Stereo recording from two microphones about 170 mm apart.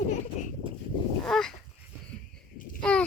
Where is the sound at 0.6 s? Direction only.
30° right (ahead or behind).